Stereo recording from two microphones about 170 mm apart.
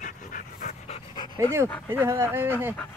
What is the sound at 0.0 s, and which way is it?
Dog, 50° left (ahead or behind).